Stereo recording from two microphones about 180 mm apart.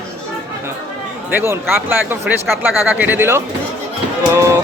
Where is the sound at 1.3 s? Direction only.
15° right (ahead or behind).